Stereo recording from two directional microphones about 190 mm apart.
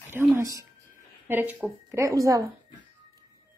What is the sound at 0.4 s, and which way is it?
A woman's voice, 15° right (ahead or behind).